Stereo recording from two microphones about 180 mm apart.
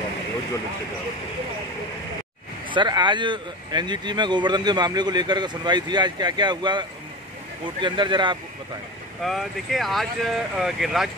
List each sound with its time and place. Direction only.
2.7 s speech: 25° right (ahead or behind)
9.2 s speech: centre (ahead or behind)